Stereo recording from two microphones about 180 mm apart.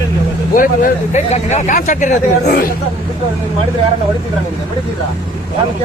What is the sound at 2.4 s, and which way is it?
Speech, 65° left (ahead or behind).